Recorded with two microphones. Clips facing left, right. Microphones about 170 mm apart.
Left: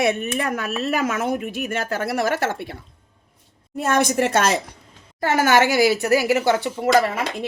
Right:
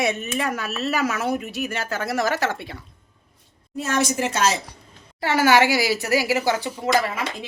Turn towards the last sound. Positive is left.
turn(degrees=55)  # may be behind; listen again after turning